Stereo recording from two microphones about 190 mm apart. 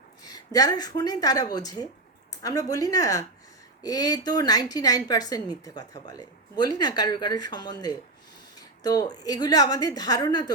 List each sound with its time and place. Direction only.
0.3 s a woman's voice: 20° left (ahead or behind)